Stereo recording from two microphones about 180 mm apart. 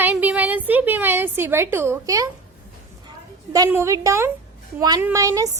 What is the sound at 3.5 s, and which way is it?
A woman's voice, 20° right (ahead or behind).